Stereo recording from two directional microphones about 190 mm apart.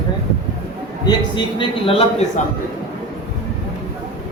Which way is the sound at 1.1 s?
25° left (ahead or behind).